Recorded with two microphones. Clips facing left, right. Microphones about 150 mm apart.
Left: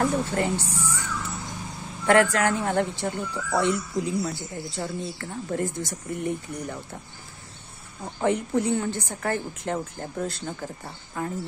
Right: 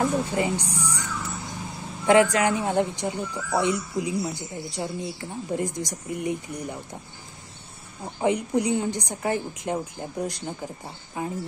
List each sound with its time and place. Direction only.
0.0 s speech: 15° right (ahead or behind)
2.0 s speech: 15° right (ahead or behind)
8.2 s speech: 15° right (ahead or behind)